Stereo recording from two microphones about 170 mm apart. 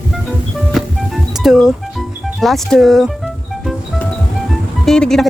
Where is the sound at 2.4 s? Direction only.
Centre (ahead or behind).